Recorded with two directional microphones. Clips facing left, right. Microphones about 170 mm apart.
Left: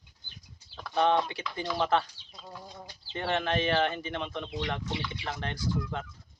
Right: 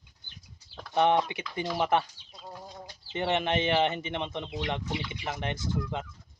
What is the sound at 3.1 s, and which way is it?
Speech, 20° right (ahead or behind).